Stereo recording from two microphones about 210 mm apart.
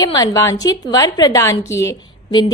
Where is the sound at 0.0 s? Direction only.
15° left (ahead or behind).